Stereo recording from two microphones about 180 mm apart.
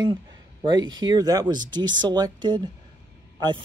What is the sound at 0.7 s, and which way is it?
Speech, 25° right (ahead or behind).